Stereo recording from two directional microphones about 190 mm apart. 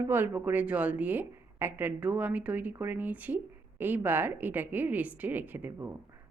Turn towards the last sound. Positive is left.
turn(degrees=-10)  # may be behind; listen again after turning